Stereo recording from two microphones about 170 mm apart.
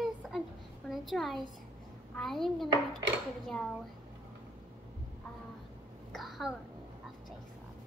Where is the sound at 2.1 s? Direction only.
Centre (ahead or behind).